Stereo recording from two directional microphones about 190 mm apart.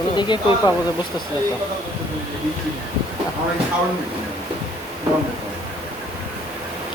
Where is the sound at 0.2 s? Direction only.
25° left (ahead or behind).